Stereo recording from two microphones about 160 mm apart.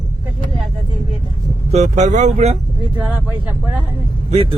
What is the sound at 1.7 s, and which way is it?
Speech, 45° right (ahead or behind).